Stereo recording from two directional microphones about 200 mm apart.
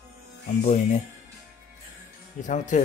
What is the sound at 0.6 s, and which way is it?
Speech, 40° left (ahead or behind).